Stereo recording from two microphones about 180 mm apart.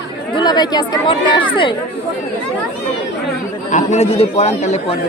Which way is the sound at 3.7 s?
40° left (ahead or behind).